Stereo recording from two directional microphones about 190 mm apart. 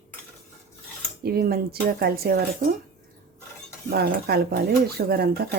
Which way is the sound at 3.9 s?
55° right (ahead or behind).